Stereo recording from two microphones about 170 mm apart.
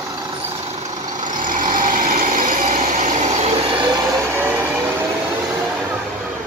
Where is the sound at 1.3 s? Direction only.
50° right (ahead or behind); by 4.2 s 25° right (ahead or behind).